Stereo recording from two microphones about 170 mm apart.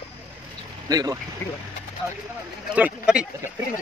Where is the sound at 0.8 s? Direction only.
20° right (ahead or behind).